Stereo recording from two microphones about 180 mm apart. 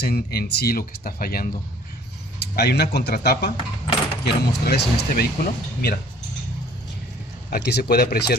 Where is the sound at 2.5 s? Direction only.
65° left (ahead or behind).